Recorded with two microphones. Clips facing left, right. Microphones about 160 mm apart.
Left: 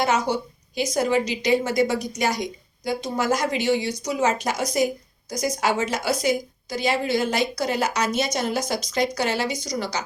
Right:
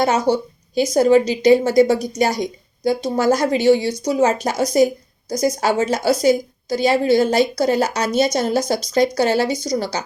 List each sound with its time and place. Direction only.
0.0 s a woman's voice: 35° right (ahead or behind)